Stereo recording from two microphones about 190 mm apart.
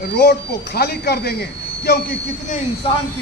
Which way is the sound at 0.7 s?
60° left (ahead or behind).